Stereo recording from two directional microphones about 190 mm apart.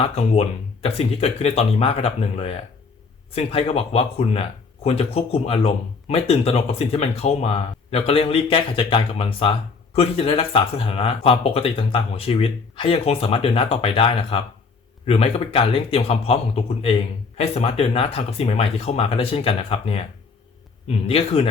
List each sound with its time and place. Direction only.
0.0 s speech: 30° left (ahead or behind)